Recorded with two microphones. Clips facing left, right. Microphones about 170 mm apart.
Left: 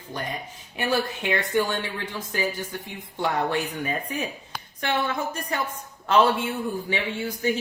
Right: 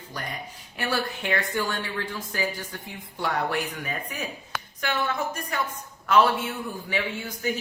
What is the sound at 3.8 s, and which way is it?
Speech, 25° left (ahead or behind).